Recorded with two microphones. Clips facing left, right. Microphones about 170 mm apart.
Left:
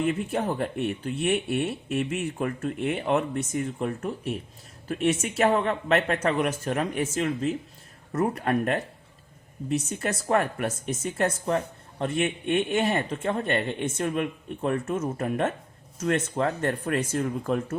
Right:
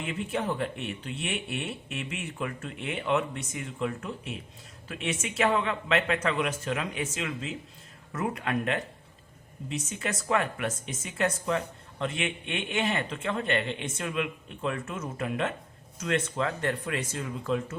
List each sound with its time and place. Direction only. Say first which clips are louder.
0.0 s speech: left 5 dB; 45° left (ahead or behind)